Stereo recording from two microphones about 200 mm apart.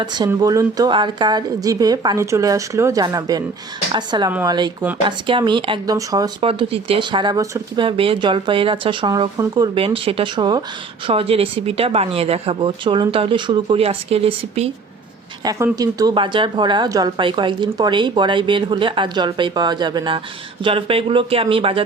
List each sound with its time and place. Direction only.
0.0 s speech: 20° right (ahead or behind)
4.3 s speech: 10° right (ahead or behind)
5.0 s speech: 25° right (ahead or behind)
15.4 s speech: 15° right (ahead or behind)